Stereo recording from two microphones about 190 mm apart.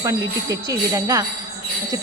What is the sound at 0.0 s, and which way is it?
Speech, 15° right (ahead or behind).